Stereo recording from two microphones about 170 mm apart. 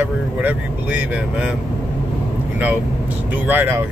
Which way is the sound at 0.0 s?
10° right (ahead or behind).